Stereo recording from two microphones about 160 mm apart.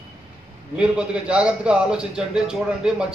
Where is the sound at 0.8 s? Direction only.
5° right (ahead or behind).